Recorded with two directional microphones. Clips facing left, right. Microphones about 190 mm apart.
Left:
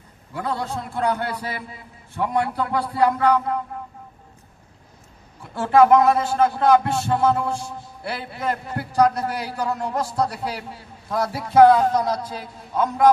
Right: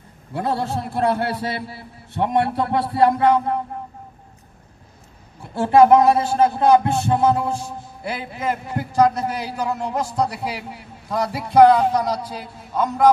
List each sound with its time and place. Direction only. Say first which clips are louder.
0.3 s a man's voice: right 4 dB; 35° right (ahead or behind)
2.3 s music: right 3 dB; 30° right (ahead or behind)
5.5 s music: right 2 dB; 25° right (ahead or behind)
8.0 s a man's voice: right 1 dB; 15° right (ahead or behind)